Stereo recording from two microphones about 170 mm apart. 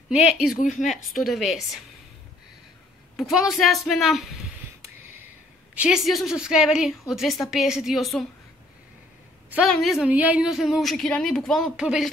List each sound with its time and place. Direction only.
0.1 s a woman's voice: 5° right (ahead or behind)
0.6 s a woman's voice: 50° left (ahead or behind)
0.8 s a woman's voice: centre (ahead or behind)
3.2 s a woman's voice: centre (ahead or behind)
5.8 s a woman's voice: 5° right (ahead or behind)
9.7 s a woman's voice: centre (ahead or behind)